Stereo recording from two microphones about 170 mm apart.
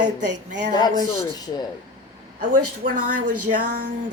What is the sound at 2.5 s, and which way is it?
Speech, 50° right (ahead or behind).